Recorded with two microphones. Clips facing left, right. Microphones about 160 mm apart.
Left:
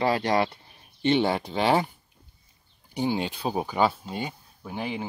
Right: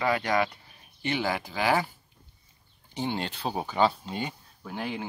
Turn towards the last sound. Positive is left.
turn(degrees=10)  # may be behind; listen again after turning